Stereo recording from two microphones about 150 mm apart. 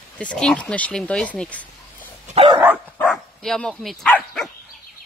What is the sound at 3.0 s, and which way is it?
Dog, 5° left (ahead or behind).